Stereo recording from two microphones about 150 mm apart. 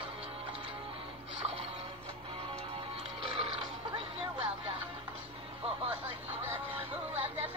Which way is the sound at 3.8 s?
40° right (ahead or behind).